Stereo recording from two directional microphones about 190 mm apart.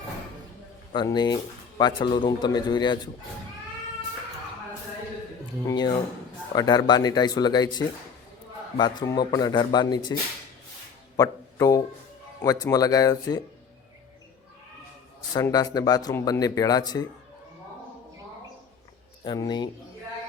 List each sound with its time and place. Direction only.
0.9 s speech: 25° left (ahead or behind)
5.6 s speech: 20° left (ahead or behind)
11.2 s a man's voice: 15° left (ahead or behind)
15.4 s speech: 20° left (ahead or behind)
19.2 s speech: 20° left (ahead or behind)